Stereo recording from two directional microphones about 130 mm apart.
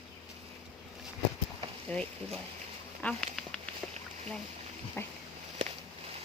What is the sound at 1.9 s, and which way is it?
Speech, 10° left (ahead or behind).